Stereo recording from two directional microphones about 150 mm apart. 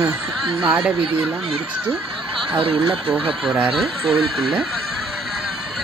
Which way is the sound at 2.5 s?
35° right (ahead or behind).